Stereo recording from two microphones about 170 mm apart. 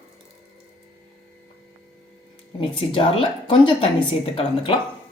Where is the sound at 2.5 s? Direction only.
30° left (ahead or behind).